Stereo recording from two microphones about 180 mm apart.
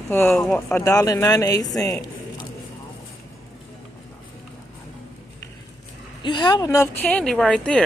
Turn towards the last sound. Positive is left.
turn(degrees=5)  # may be behind; listen again after turning